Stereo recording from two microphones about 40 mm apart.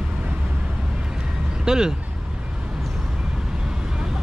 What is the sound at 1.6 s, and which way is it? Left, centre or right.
Speech, centre.